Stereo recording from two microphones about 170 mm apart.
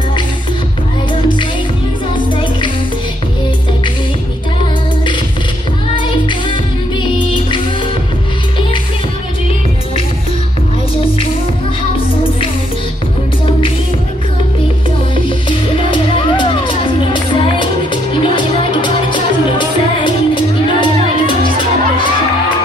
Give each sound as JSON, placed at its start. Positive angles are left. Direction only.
{"t": 5.9, "sound": "music", "side_deg": 30}
{"t": 15.2, "sound": "music", "side_deg": 30}